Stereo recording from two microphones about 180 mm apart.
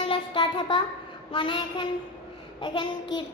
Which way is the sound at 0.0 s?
30° left (ahead or behind).